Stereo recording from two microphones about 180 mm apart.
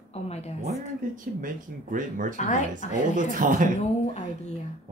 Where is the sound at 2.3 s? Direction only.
40° left (ahead or behind).